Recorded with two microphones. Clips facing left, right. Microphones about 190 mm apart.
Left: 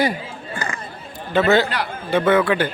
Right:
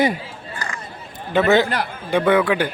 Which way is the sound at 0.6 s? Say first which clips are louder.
Left 3 dB; 25° left (ahead or behind).